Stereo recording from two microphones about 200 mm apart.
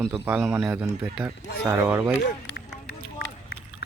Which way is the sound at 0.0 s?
5° right (ahead or behind).